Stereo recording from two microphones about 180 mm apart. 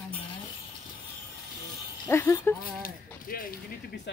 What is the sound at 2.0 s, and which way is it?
Speech, 15° left (ahead or behind).